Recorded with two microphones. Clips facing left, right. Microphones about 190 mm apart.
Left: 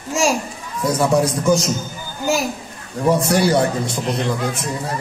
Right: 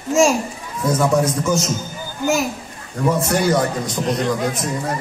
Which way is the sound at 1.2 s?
35° left (ahead or behind).